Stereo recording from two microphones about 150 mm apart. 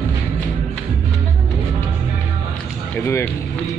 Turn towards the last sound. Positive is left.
turn(degrees=15)  # may be behind; listen again after turning